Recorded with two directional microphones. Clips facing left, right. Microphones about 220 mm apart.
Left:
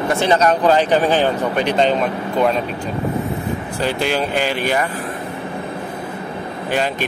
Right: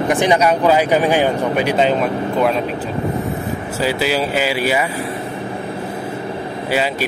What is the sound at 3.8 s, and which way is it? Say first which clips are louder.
Speech: right 2 dB; 5° right (ahead or behind).